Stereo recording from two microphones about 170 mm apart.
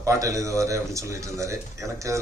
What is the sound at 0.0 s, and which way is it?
A man's voice, 20° right (ahead or behind).